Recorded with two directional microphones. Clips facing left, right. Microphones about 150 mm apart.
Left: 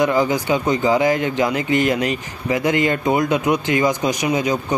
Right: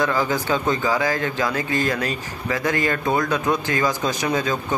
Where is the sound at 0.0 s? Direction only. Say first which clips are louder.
Left 4 dB; 20° left (ahead or behind).